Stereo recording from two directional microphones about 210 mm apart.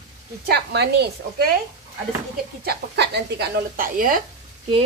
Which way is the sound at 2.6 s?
50° right (ahead or behind).